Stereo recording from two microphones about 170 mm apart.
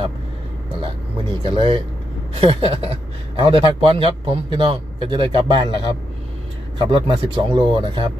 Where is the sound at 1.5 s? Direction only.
30° right (ahead or behind).